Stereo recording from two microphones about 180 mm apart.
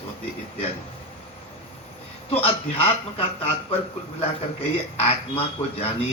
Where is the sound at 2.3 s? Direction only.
30° left (ahead or behind).